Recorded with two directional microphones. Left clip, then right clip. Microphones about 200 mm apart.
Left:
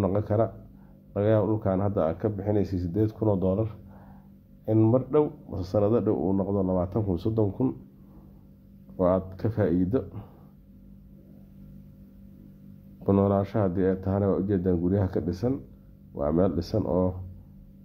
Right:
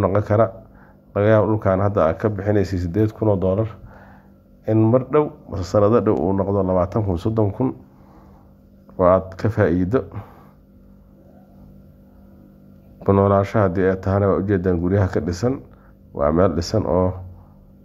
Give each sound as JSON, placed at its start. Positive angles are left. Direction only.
{"t": 0.0, "sound": "a man's voice", "side_deg": -15}
{"t": 8.9, "sound": "a man's voice", "side_deg": -15}
{"t": 13.0, "sound": "a man's voice", "side_deg": -15}